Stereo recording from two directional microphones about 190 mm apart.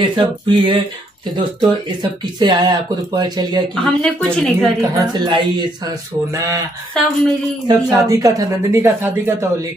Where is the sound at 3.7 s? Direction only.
5° left (ahead or behind).